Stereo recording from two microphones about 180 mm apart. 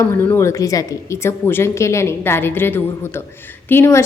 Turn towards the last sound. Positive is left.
turn(degrees=15)  # may be behind; listen again after turning